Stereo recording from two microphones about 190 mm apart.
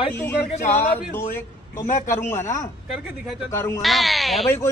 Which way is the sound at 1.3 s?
15° left (ahead or behind).